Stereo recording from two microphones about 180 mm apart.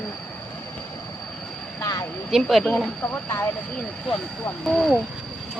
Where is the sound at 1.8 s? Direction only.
20° left (ahead or behind).